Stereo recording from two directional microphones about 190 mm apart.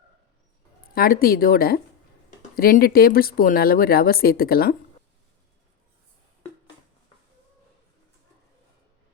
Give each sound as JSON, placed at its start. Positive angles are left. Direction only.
{"t": 0.9, "sound": "speech", "side_deg": 50}